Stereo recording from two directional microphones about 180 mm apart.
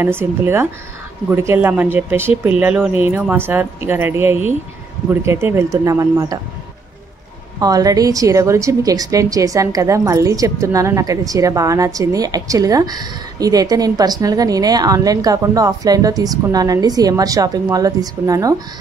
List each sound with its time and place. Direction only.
0.0 s speech: 15° right (ahead or behind)
7.6 s a woman's voice: 20° right (ahead or behind)